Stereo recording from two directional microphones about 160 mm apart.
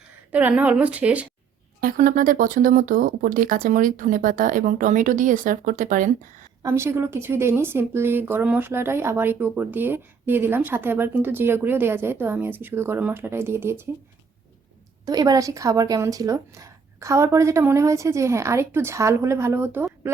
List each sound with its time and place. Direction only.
0.3 s speech: 10° right (ahead or behind)
1.8 s speech: 55° right (ahead or behind)
6.6 s speech: 20° right (ahead or behind)
15.0 s a woman's voice: 25° right (ahead or behind)